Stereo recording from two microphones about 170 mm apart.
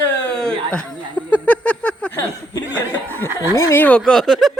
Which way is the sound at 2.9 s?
10° left (ahead or behind).